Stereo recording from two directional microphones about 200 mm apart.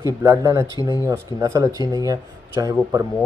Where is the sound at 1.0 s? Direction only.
15° right (ahead or behind).